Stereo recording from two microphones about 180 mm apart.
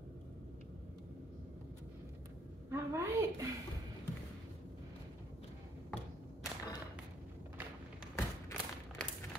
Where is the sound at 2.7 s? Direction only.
15° right (ahead or behind).